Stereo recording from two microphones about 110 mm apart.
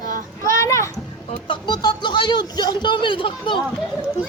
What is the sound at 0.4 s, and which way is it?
Children playing, 25° left (ahead or behind).